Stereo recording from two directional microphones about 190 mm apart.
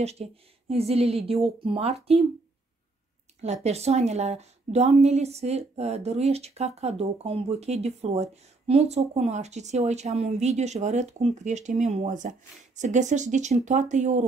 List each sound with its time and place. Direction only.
0.0 s a woman's voice: 35° right (ahead or behind)
3.6 s a woman's voice: 35° right (ahead or behind)